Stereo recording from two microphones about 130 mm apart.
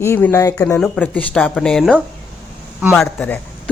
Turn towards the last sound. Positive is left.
turn(degrees=10)  # may be behind; listen again after turning